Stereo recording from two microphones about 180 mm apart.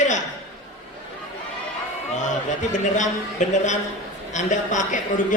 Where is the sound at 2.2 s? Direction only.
45° left (ahead or behind).